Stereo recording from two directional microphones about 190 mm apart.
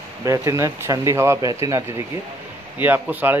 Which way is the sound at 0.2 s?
15° right (ahead or behind).